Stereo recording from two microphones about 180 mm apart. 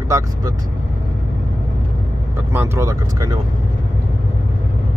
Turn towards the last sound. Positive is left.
turn(degrees=-20)  # may be behind; listen again after turning